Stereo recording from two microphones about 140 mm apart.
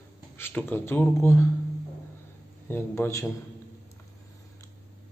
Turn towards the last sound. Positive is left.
turn(degrees=20)  # may be behind; listen again after turning